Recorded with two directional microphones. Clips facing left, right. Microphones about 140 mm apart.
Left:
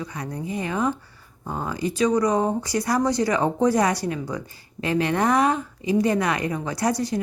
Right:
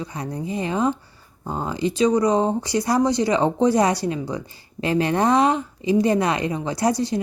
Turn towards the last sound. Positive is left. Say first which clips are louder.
# right 2 dB
turn(degrees=-25)  # may be behind; listen again after turning